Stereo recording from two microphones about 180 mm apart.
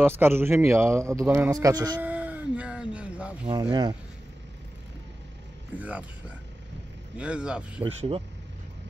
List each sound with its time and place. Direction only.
0.0 s a man's voice: 10° right (ahead or behind)
2.0 s a sound: 10° right (ahead or behind)
5.8 s a man's voice: 10° right (ahead or behind)
7.8 s speech: 30° right (ahead or behind)